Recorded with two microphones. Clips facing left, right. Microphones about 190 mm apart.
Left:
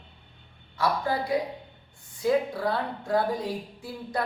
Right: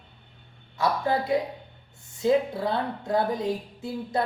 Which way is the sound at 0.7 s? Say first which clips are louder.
Right 2 dB; 20° right (ahead or behind).